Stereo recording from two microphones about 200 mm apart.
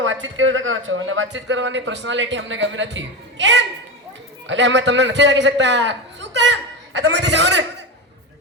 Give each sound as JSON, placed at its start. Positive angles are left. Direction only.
{"t": 0.0, "sound": "a man's voice", "side_deg": -80}